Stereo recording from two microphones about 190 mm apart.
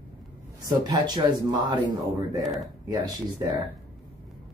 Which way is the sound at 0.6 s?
20° right (ahead or behind).